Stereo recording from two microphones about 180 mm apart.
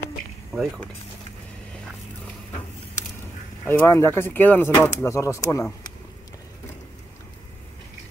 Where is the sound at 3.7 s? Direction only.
15° left (ahead or behind).